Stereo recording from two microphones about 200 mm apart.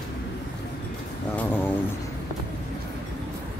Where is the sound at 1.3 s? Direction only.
10° left (ahead or behind).